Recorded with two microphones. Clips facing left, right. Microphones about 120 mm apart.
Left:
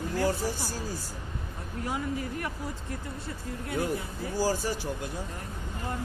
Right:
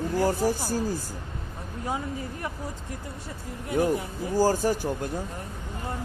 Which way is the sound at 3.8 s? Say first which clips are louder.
Right 5 dB; 45° right (ahead or behind).